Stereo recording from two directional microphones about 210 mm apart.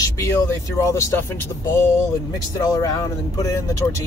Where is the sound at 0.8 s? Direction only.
15° left (ahead or behind).